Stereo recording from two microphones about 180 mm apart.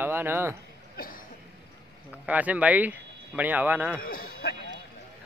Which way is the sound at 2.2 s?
10° right (ahead or behind).